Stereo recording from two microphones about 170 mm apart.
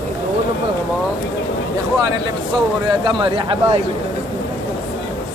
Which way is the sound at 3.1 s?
30° right (ahead or behind).